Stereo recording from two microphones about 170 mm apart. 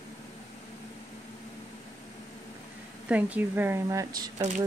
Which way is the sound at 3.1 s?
10° right (ahead or behind).